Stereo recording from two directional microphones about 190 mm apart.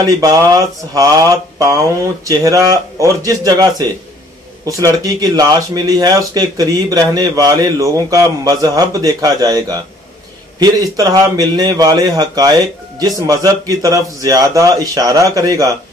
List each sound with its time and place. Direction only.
0.0 s a man's voice: 20° right (ahead or behind)